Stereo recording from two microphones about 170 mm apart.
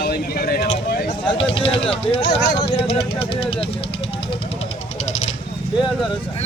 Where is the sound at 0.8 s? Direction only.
65° left (ahead or behind).